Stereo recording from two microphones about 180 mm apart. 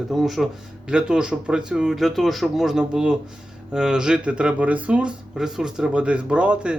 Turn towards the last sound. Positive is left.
turn(degrees=-5)  # may be behind; listen again after turning